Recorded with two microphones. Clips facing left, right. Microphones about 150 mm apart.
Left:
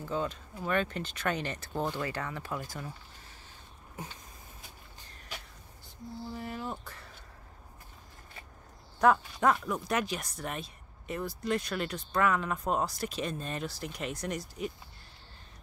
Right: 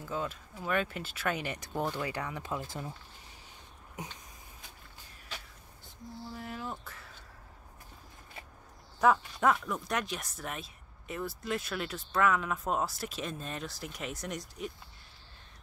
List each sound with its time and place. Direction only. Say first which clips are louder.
0.0 s speech: left 3 dB; 5° right (ahead or behind); by 2.9 s 20° right (ahead or behind)
6.3 s a sound: left 2 dB; centre (ahead or behind)
6.8 s speech: left 1 dB; centre (ahead or behind)
9.0 s speech: left 1 dB; centre (ahead or behind)